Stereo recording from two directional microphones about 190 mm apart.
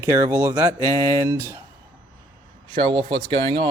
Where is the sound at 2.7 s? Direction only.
25° right (ahead or behind).